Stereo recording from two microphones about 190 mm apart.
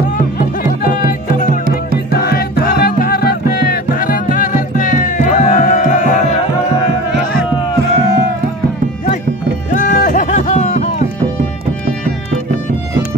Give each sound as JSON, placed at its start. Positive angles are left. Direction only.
{"t": 2.2, "sound": "music", "side_deg": 55}
{"t": 9.7, "sound": "music", "side_deg": 50}